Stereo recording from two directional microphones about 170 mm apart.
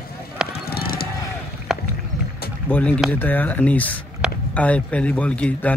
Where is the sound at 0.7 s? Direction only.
60° left (ahead or behind).